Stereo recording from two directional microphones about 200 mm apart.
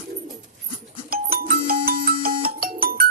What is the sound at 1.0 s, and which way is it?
Music, 50° right (ahead or behind).